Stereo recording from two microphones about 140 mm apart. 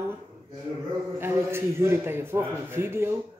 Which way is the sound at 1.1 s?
15° right (ahead or behind).